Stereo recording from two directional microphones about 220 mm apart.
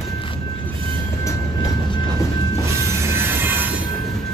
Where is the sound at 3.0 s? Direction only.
10° right (ahead or behind).